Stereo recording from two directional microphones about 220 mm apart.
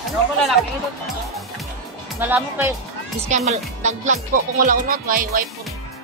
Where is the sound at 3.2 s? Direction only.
30° right (ahead or behind).